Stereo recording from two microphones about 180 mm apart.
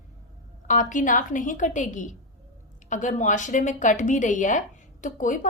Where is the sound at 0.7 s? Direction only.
45° left (ahead or behind).